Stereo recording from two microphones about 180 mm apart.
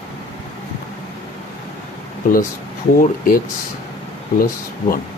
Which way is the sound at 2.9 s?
50° left (ahead or behind).